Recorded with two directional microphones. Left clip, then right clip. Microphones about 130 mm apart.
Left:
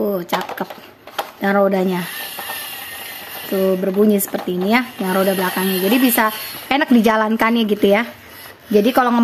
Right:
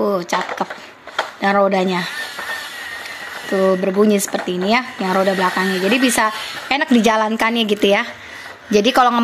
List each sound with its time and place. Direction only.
0.1 s speech: 45° left (ahead or behind)
3.5 s speech: 30° left (ahead or behind)
4.0 s a woman's voice: 40° left (ahead or behind)
5.2 s speech: 30° left (ahead or behind)
5.6 s a woman's voice: 50° left (ahead or behind); by 9.2 s 25° left (ahead or behind)